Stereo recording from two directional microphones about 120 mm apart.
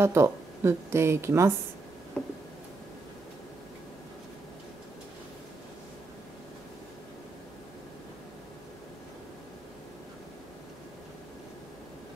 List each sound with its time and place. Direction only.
0.0 s speech: 20° right (ahead or behind)